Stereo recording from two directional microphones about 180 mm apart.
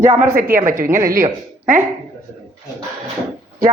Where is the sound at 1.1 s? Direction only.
50° right (ahead or behind).